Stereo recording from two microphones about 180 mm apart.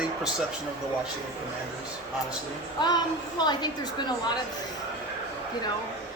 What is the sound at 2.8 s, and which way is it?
A woman's voice, 25° left (ahead or behind).